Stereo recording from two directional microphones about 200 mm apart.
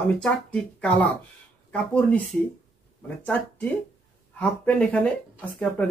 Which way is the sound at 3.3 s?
5° left (ahead or behind).